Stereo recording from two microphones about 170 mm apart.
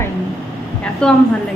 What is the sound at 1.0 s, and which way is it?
Speech, 5° left (ahead or behind).